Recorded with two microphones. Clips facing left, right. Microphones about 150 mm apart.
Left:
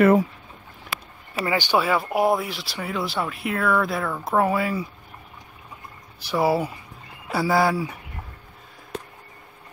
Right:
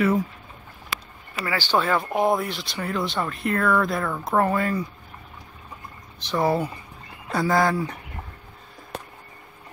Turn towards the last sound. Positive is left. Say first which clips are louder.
# left 1 dB
turn(degrees=10)  # may be behind; listen again after turning